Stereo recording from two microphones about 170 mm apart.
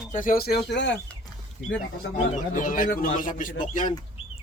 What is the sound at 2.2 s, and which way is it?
A man's voice, 50° left (ahead or behind).